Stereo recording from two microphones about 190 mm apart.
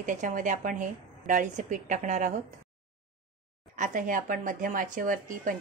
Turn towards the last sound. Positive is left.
turn(degrees=-45)  # may be behind; listen again after turning